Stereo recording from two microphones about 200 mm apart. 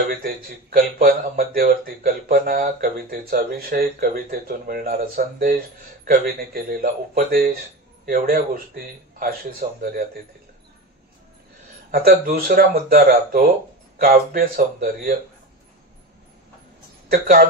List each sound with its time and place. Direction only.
0.1 s speech: 45° right (ahead or behind)
11.9 s speech: 50° right (ahead or behind)
17.1 s speech: 45° right (ahead or behind)